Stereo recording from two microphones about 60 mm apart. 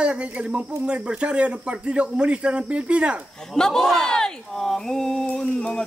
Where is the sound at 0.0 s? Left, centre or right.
Right.